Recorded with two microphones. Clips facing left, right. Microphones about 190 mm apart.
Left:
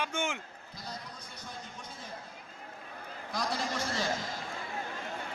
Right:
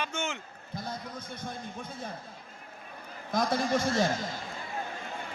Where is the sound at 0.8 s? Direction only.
55° right (ahead or behind).